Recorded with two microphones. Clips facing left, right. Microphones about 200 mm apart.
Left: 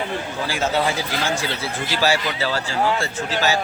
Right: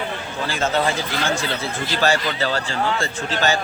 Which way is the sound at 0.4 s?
10° left (ahead or behind).